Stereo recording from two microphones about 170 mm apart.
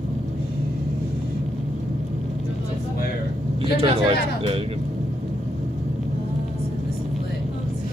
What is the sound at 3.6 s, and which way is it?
Speech, 35° right (ahead or behind).